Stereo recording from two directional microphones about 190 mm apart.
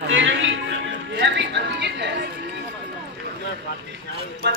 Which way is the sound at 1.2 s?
65° right (ahead or behind).